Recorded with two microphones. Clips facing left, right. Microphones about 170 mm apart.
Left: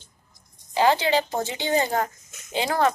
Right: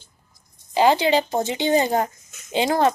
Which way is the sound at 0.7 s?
15° right (ahead or behind).